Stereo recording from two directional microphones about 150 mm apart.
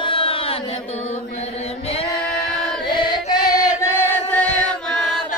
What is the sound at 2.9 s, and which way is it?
Chant, 30° left (ahead or behind).